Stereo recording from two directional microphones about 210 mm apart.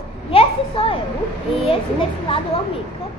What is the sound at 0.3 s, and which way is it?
Children playing, 25° left (ahead or behind).